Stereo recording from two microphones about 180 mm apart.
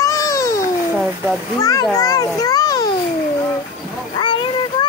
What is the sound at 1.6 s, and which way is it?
A child's voice, 20° left (ahead or behind).